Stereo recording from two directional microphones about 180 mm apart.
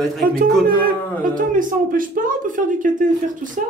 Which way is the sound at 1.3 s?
50° right (ahead or behind).